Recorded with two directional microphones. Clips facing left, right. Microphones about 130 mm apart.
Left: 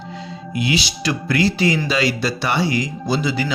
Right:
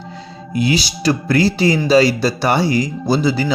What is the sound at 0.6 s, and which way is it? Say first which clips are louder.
Speech: right 5 dB; 40° right (ahead or behind).